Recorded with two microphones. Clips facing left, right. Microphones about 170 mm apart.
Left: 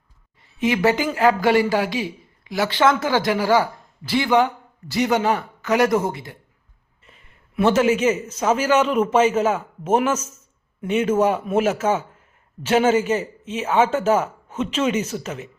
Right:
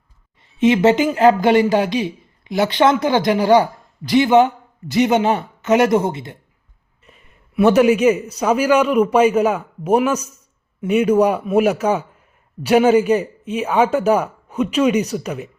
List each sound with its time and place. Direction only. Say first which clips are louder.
0.6 s a man's voice: right 6 dB; 20° right (ahead or behind)
7.5 s speech: right 5 dB; 15° right (ahead or behind)